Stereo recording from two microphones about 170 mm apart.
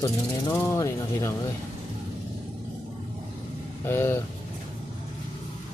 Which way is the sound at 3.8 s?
15° left (ahead or behind).